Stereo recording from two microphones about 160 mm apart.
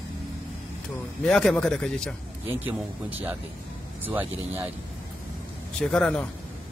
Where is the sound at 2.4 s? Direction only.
10° right (ahead or behind).